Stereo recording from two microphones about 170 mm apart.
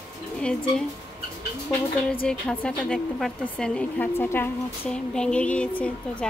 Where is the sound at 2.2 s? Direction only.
5° left (ahead or behind).